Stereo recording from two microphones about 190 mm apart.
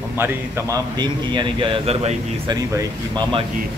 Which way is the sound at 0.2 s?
15° right (ahead or behind).